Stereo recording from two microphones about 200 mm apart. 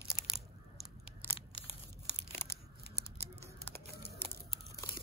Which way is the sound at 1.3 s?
30° left (ahead or behind).